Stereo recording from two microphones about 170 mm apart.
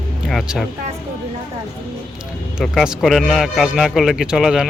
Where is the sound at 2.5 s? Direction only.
Centre (ahead or behind).